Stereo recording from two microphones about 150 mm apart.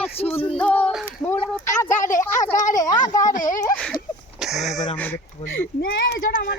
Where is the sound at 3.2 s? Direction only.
60° left (ahead or behind).